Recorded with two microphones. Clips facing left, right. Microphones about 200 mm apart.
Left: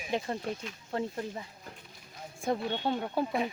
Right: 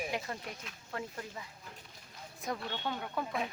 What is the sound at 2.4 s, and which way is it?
Speech, 30° left (ahead or behind).